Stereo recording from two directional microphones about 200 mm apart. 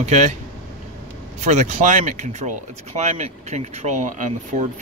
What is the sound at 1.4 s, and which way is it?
Speech, 35° right (ahead or behind).